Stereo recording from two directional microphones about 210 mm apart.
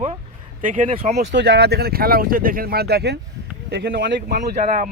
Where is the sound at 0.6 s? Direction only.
40° right (ahead or behind).